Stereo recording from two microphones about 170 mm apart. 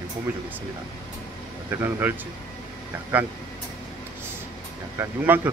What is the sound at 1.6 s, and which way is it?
Speech, 15° right (ahead or behind).